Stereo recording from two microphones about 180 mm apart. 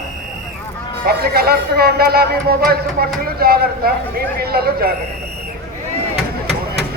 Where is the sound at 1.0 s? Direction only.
60° right (ahead or behind).